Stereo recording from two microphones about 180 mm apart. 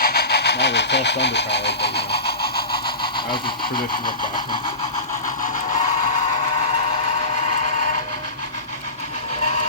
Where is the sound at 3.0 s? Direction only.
30° left (ahead or behind).